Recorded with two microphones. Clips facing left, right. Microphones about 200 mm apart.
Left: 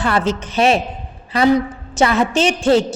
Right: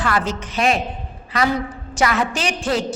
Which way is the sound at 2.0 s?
25° left (ahead or behind).